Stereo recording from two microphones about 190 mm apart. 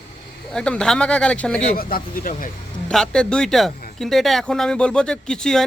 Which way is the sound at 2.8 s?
5° left (ahead or behind).